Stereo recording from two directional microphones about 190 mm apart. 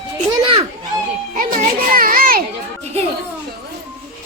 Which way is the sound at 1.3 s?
45° right (ahead or behind).